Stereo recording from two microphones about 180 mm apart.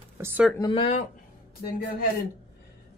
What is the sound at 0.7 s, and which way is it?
Speech, 35° left (ahead or behind).